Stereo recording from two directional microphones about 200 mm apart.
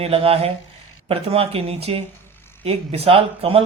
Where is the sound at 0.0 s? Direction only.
30° right (ahead or behind).